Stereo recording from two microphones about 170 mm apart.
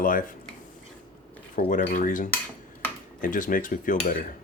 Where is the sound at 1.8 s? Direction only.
50° left (ahead or behind).